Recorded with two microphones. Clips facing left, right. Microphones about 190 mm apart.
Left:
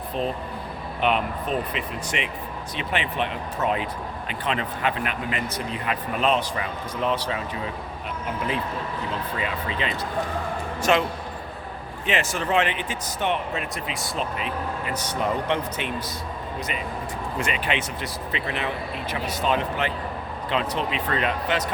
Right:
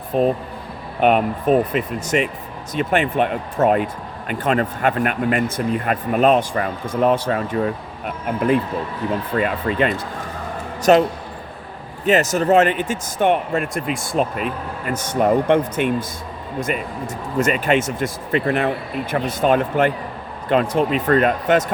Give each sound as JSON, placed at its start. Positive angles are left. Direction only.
{"t": 0.1, "sound": "speech", "side_deg": -50}
{"t": 10.9, "sound": "a man's voice", "side_deg": -40}
{"t": 12.0, "sound": "speech", "side_deg": -40}